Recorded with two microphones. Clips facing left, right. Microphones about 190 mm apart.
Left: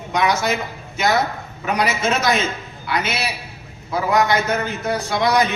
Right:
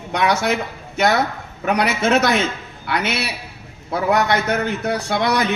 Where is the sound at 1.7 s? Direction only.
60° right (ahead or behind).